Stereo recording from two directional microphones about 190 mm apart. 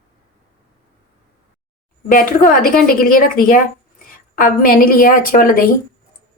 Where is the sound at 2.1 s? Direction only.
45° left (ahead or behind).